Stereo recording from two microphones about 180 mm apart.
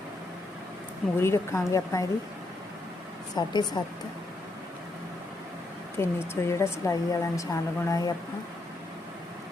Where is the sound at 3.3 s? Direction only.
25° left (ahead or behind).